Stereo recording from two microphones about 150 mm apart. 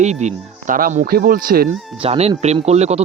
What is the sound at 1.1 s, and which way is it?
Speech, 80° right.